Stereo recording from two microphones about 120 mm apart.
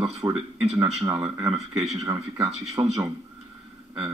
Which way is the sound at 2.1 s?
30° right (ahead or behind).